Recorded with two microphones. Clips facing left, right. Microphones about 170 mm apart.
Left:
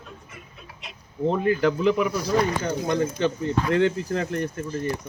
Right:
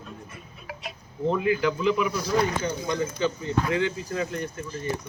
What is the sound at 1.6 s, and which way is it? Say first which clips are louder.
Speech: left 3 dB; 55° left (ahead or behind).